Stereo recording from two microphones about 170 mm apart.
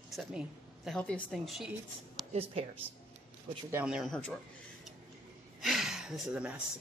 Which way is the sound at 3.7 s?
10° right (ahead or behind).